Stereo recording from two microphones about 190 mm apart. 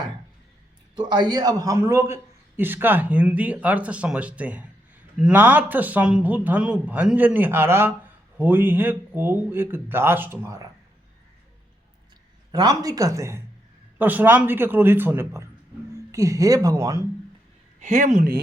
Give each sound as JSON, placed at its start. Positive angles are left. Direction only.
{"t": 0.9, "sound": "a man's voice", "side_deg": -25}
{"t": 12.5, "sound": "a man's voice", "side_deg": -20}
{"t": 17.7, "sound": "speech", "side_deg": -40}